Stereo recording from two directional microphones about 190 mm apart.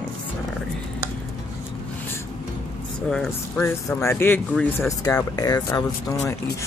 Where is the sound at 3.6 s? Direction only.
15° left (ahead or behind).